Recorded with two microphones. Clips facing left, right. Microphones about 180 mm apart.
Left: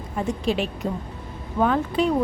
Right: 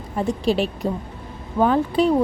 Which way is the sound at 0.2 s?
35° right (ahead or behind).